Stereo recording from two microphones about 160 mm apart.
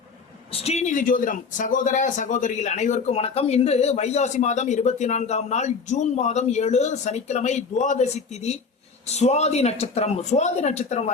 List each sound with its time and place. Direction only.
0.5 s speech: 40° left (ahead or behind)